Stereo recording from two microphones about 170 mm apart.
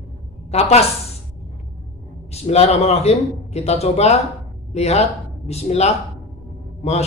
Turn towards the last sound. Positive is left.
turn(degrees=40)  # may be behind; listen again after turning